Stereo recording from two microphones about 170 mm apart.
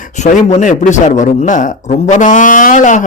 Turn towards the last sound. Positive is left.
turn(degrees=45)  # may be behind; listen again after turning